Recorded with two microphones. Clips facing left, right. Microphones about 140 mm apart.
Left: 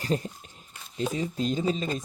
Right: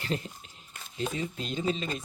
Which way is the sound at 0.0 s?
40° left (ahead or behind).